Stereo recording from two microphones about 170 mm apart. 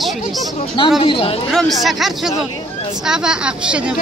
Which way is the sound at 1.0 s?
30° left (ahead or behind).